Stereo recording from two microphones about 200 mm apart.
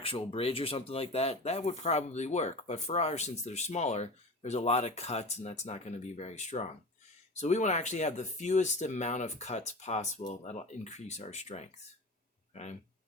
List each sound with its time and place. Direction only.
0.0 s speech: 30° left (ahead or behind)